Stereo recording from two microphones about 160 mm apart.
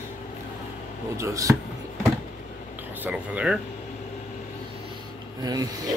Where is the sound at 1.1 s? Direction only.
20° right (ahead or behind).